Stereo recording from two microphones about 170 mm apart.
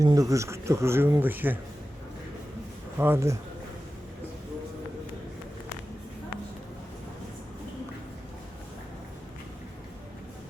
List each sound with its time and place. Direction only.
0.0 s speech: 20° right (ahead or behind)
3.0 s speech: 15° right (ahead or behind)